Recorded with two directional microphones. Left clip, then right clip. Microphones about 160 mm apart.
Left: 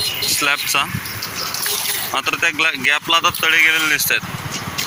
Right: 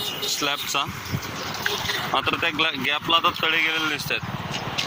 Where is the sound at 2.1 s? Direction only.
5° right (ahead or behind).